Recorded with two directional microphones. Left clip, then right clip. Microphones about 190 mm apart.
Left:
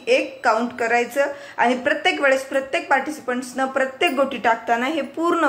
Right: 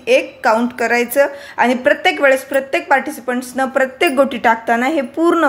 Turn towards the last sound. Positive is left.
turn(degrees=-35)  # may be behind; listen again after turning